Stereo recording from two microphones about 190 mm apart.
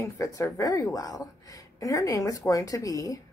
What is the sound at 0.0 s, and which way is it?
A woman's voice, 15° left (ahead or behind).